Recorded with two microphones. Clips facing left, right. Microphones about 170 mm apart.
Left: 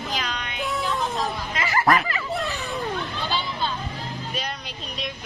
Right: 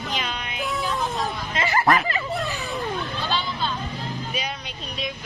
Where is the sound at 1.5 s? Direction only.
30° right (ahead or behind).